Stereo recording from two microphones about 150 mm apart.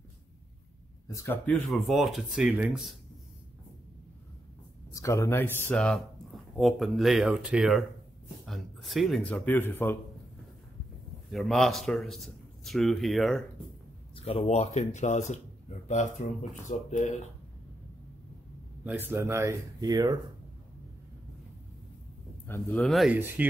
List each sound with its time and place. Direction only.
1.0 s speech: 20° left (ahead or behind); by 3.0 s 5° right (ahead or behind)
4.9 s speech: 20° left (ahead or behind)
5.8 s speech: 5° left (ahead or behind)
11.3 s speech: centre (ahead or behind)
14.1 s speech: 40° left (ahead or behind); by 17.1 s 55° left (ahead or behind)
18.9 s speech: 15° right (ahead or behind)
22.5 s speech: 15° left (ahead or behind)
22.8 s speech: centre (ahead or behind)
23.1 s speech: 15° right (ahead or behind)